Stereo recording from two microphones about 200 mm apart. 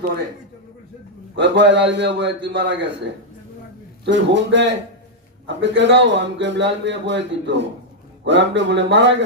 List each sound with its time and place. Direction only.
1.4 s a man's voice: 60° right (ahead or behind)
4.0 s a man's voice: 60° right (ahead or behind)